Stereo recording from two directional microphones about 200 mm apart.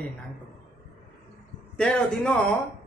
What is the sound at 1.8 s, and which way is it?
Speech, 5° left (ahead or behind).